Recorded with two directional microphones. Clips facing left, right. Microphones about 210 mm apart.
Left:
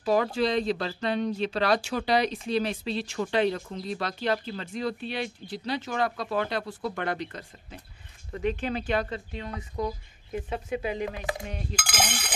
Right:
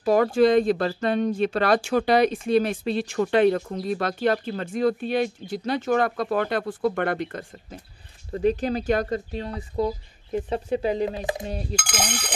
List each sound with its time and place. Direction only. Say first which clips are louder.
0.0 s speech: right 6 dB; 50° right (ahead or behind)
8.3 s speech: right 6 dB; 35° right (ahead or behind)
11.7 s speech: right 2 dB; 5° left (ahead or behind)